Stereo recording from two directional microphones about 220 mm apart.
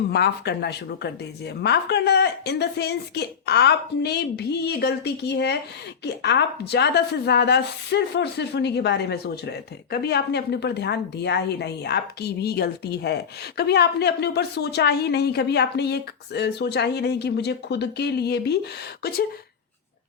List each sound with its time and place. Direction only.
0.1 s a woman's voice: 50° left (ahead or behind)